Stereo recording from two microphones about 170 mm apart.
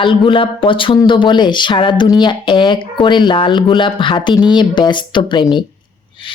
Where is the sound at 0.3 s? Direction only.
30° left (ahead or behind).